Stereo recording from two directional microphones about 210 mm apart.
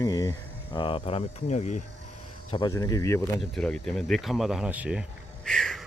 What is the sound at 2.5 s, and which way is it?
Speech, 20° left (ahead or behind).